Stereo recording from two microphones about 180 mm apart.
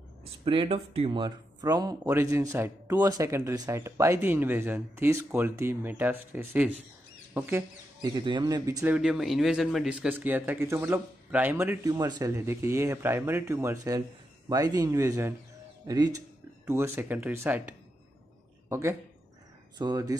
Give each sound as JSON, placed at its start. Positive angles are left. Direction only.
{"t": 0.5, "sound": "speech", "side_deg": -30}
{"t": 8.0, "sound": "speech", "side_deg": -25}
{"t": 8.9, "sound": "a woman's voice", "side_deg": -5}